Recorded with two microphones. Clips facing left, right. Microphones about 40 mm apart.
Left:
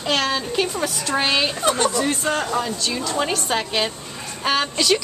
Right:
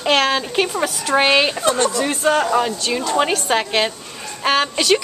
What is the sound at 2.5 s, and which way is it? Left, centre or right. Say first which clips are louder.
A woman's voice: right 5 dB; right.